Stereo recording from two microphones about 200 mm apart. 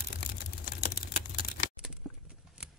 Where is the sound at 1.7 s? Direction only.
5° right (ahead or behind).